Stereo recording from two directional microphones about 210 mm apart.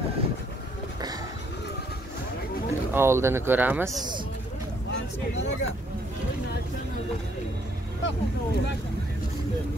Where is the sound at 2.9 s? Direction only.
10° right (ahead or behind).